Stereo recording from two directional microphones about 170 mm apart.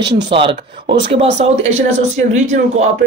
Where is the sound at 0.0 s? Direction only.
30° right (ahead or behind).